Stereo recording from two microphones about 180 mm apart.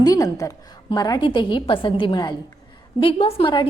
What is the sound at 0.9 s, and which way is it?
A woman's voice, 20° left (ahead or behind).